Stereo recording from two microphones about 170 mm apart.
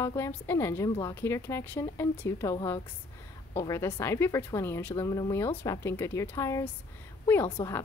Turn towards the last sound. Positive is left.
turn(degrees=20)  # may be behind; listen again after turning